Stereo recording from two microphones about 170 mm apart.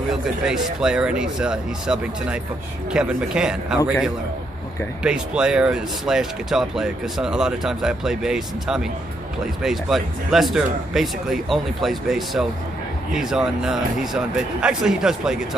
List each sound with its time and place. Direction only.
0.1 s speech: 5° right (ahead or behind)